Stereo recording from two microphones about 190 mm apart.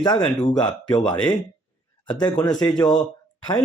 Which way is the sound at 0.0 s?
20° left (ahead or behind).